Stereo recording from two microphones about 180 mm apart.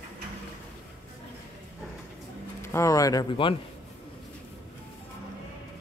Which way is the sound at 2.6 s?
15° left (ahead or behind).